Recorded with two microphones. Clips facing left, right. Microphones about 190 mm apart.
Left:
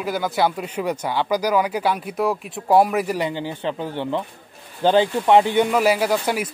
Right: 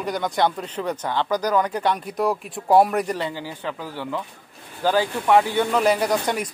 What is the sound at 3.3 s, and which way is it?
Speech, 25° left (ahead or behind).